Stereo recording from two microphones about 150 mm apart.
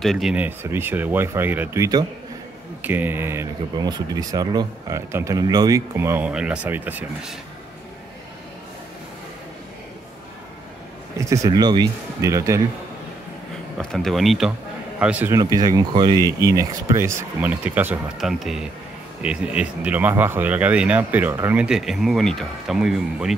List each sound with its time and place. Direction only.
0.0 s speech: centre (ahead or behind); by 2.0 s 25° right (ahead or behind)
2.8 s speech: 10° right (ahead or behind)
3.7 s speech: 25° right (ahead or behind); by 7.3 s 10° right (ahead or behind)
11.1 s speech: 20° right (ahead or behind)
13.7 s speech: centre (ahead or behind)
15.3 s speech: 25° right (ahead or behind)
16.3 s speech: 20° right (ahead or behind); by 23.3 s centre (ahead or behind)